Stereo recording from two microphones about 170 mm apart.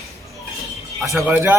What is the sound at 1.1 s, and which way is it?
Speech, 10° right (ahead or behind).